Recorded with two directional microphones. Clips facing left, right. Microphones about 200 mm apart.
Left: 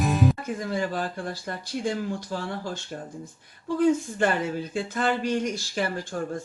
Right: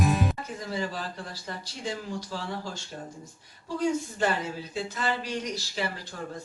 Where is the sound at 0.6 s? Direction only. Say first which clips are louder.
Left 5 dB; 50° left (ahead or behind).